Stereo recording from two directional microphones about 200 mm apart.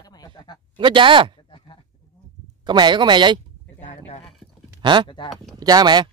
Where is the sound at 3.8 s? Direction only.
35° left (ahead or behind).